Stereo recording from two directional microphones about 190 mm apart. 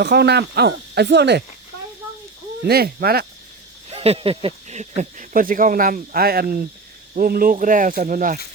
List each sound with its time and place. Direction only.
0.0 s speech: 60° right (ahead or behind)
2.6 s speech: 55° right (ahead or behind)
3.8 s speech: 30° right (ahead or behind)